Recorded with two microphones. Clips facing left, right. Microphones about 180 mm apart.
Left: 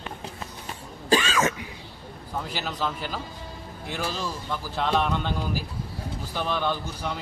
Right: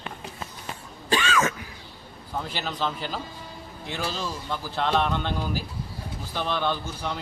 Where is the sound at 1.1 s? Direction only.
35° left (ahead or behind).